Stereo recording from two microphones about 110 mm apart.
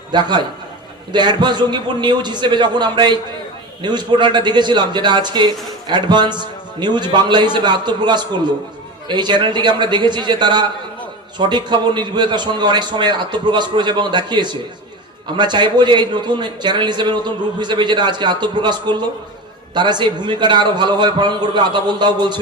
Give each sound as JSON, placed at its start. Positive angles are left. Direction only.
{"t": 0.1, "sound": "a man's voice", "side_deg": -45}